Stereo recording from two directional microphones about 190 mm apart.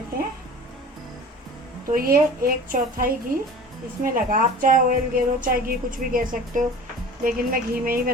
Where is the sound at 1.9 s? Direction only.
50° right (ahead or behind).